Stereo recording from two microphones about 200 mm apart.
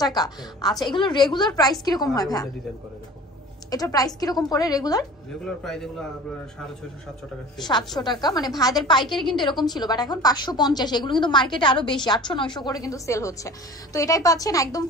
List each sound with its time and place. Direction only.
0.0 s a woman's voice: 20° left (ahead or behind)
3.7 s a woman's voice: 20° left (ahead or behind)
5.4 s a man's voice: centre (ahead or behind)
8.0 s a woman's voice: 20° left (ahead or behind)
9.0 s a man's voice: centre (ahead or behind)
9.4 s a woman's voice: 20° left (ahead or behind)